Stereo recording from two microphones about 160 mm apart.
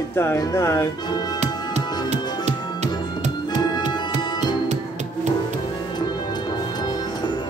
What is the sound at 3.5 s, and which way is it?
Music, 25° left (ahead or behind).